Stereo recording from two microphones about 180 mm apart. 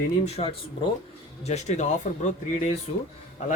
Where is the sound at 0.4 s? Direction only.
35° left (ahead or behind).